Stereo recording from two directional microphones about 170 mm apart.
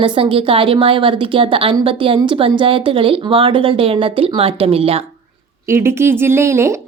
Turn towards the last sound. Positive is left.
turn(degrees=-15)  # may be behind; listen again after turning